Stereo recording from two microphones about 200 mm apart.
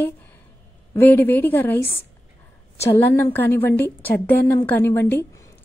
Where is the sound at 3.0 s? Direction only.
10° left (ahead or behind).